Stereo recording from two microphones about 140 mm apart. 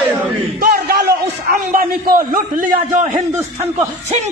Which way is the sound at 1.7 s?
90° right.